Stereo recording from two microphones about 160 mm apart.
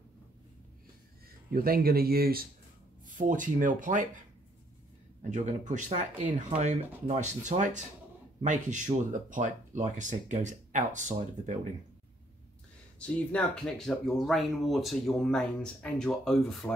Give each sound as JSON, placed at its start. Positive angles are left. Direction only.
{"t": 1.5, "sound": "speech", "side_deg": -65}
{"t": 3.2, "sound": "speech", "side_deg": -55}
{"t": 5.3, "sound": "speech", "side_deg": -50}
{"t": 13.0, "sound": "speech", "side_deg": 5}